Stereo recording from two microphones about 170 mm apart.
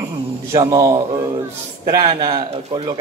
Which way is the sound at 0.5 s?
20° right (ahead or behind).